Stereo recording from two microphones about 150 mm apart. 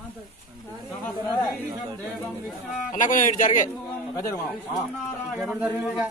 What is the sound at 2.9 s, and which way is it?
Speech, 60° left (ahead or behind).